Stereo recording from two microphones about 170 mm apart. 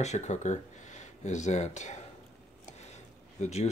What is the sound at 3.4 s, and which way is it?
Speech, 40° left (ahead or behind).